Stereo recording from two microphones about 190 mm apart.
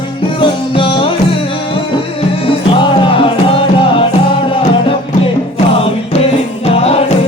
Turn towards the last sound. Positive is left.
turn(degrees=30)  # may be behind; listen again after turning